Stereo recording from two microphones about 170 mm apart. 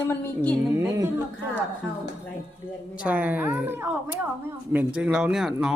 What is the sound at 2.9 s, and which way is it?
A woman's voice, 10° right (ahead or behind).